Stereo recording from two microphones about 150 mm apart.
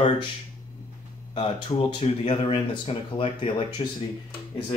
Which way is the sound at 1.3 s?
40° left (ahead or behind).